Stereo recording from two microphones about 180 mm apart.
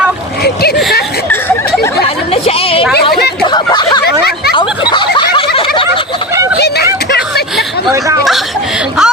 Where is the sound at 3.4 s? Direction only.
25° left (ahead or behind).